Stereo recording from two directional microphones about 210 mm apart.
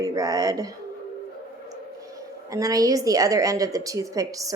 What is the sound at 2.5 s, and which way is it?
A woman's voice, 15° right (ahead or behind).